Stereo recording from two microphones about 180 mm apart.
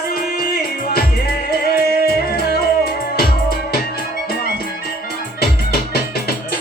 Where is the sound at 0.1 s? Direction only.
60° left (ahead or behind).